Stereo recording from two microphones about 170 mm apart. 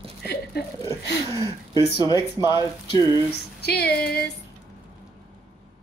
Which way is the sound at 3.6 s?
70° left (ahead or behind).